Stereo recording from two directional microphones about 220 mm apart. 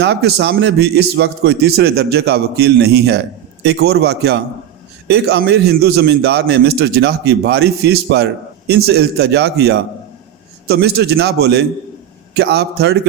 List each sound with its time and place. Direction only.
0.0 s a man's voice: 50° right (ahead or behind)